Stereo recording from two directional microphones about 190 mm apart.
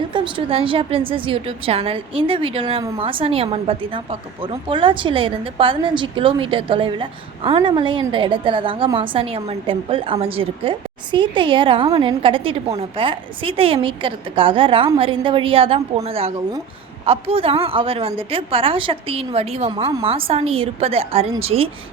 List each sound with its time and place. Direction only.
0.1 s a woman's voice: 25° right (ahead or behind)